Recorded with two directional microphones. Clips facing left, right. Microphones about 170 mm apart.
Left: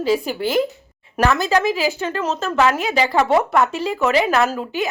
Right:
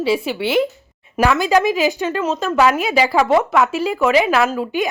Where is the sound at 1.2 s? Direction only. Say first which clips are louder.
Right 2 dB; 10° right (ahead or behind).